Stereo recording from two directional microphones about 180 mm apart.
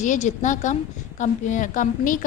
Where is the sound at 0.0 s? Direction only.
45° left (ahead or behind).